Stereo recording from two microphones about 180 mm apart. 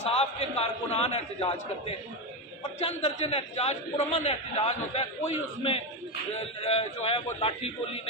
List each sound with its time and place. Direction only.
0.0 s a man's voice: 35° left (ahead or behind)